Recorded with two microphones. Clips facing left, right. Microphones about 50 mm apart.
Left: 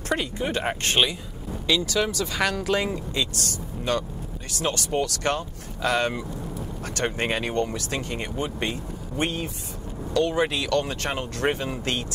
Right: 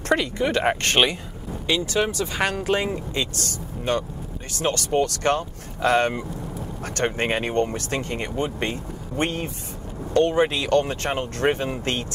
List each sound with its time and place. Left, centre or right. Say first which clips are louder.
0.2 s speech: right 5 dB; right
1.7 s speech: right 1 dB; right